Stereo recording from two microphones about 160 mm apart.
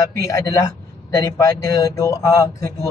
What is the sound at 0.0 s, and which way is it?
A man's voice, 20° left (ahead or behind).